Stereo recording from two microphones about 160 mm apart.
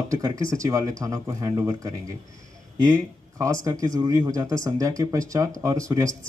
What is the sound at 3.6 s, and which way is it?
Speech, 20° right (ahead or behind).